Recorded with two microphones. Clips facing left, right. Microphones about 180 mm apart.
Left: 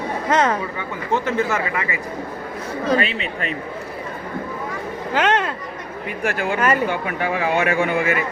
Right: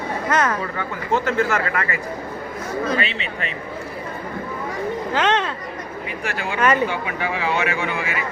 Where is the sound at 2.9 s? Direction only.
45° left (ahead or behind).